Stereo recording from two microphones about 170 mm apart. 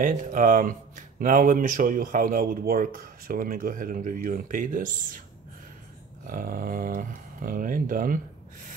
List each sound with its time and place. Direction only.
0.0 s speech: 50° right (ahead or behind)
6.2 s speech: 55° right (ahead or behind)